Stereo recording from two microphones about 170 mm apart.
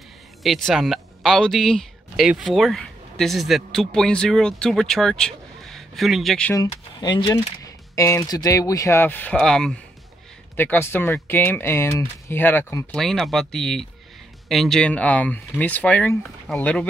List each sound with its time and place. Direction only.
0.4 s speech: centre (ahead or behind)
6.5 s speech: 25° left (ahead or behind)
12.9 s speech: centre (ahead or behind)